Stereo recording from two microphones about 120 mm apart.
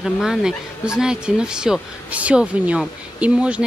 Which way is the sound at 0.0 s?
5° right (ahead or behind).